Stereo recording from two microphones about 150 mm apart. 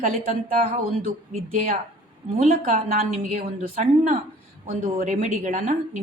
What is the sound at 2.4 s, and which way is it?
A woman's voice, 60° right (ahead or behind).